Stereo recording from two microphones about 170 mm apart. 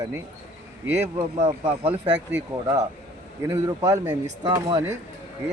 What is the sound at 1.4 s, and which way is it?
A man's voice, 15° right (ahead or behind).